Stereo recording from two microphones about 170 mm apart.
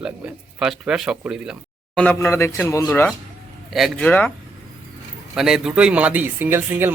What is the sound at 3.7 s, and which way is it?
Speech, centre (ahead or behind).